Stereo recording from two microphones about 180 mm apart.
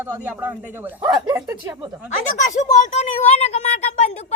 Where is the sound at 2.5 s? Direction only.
45° left (ahead or behind).